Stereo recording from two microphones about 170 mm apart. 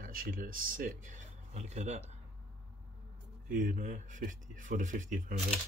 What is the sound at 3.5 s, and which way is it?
Speech, 50° right (ahead or behind).